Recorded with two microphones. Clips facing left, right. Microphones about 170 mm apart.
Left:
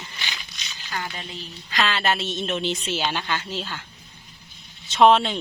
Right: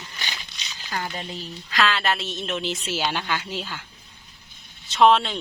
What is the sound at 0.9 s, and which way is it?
Speech, 35° right (ahead or behind).